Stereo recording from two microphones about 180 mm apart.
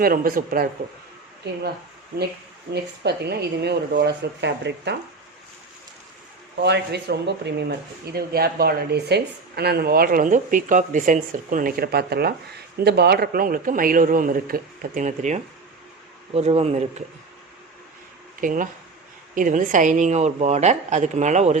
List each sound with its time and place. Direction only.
0.0 s speech: 55° right (ahead or behind)
2.7 s speech: 65° right (ahead or behind)
6.6 s a woman's voice: 70° right (ahead or behind); by 16.7 s 35° right (ahead or behind)
18.3 s a woman's voice: 50° right (ahead or behind)